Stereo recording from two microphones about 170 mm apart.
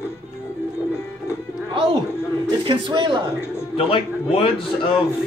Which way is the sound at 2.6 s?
30° right (ahead or behind).